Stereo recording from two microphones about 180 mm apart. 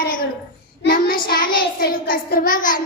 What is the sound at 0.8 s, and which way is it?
Child singing, 55° left (ahead or behind).